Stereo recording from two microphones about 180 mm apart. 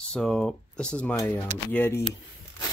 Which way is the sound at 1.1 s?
15° left (ahead or behind).